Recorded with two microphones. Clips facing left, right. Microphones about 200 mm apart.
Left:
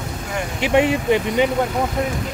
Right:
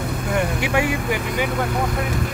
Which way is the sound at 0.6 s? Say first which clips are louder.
Left 4 dB; 25° left (ahead or behind).